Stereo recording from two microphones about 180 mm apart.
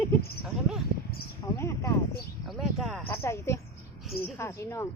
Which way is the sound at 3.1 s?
15° left (ahead or behind).